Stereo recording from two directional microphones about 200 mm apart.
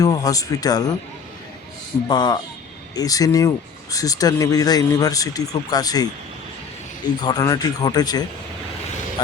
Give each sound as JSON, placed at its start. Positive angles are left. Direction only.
{"t": 0.0, "sound": "speech", "side_deg": 20}
{"t": 2.0, "sound": "speech", "side_deg": 20}
{"t": 7.2, "sound": "speech", "side_deg": 20}